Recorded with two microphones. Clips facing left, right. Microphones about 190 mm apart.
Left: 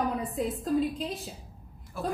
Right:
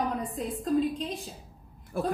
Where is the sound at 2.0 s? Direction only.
55° right (ahead or behind).